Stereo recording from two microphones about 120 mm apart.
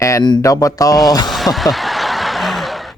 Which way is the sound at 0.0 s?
25° left (ahead or behind).